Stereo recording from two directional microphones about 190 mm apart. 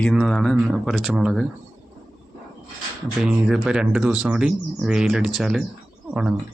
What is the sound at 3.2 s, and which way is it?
Speech, 5° right (ahead or behind).